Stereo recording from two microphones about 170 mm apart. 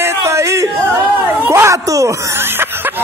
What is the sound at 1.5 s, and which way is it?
Snicker, 15° right (ahead or behind).